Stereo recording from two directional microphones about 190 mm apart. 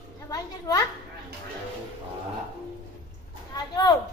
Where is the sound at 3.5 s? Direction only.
20° left (ahead or behind).